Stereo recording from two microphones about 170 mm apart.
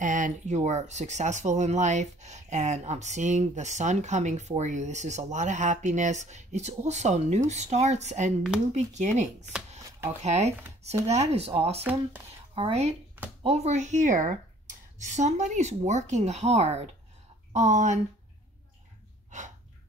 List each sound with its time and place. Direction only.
0.0 s speech: 50° right (ahead or behind)
9.8 s shuffling cards: 15° right (ahead or behind)
10.2 s speech: 40° right (ahead or behind)
11.8 s speech: 10° right (ahead or behind)
12.5 s speech: 35° right (ahead or behind)